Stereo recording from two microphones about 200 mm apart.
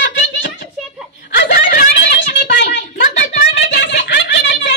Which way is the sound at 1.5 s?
45° left (ahead or behind).